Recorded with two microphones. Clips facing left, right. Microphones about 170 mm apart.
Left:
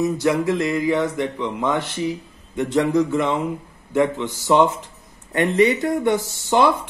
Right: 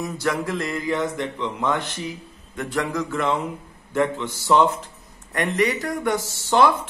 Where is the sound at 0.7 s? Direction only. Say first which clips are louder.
Left 4 dB; 10° left (ahead or behind).